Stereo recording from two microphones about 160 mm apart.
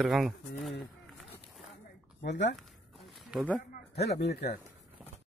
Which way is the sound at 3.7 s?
90° left.